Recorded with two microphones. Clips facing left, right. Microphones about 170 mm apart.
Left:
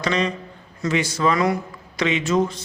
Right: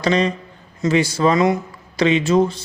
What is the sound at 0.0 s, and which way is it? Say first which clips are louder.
A man's voice: right 4 dB; 35° right (ahead or behind).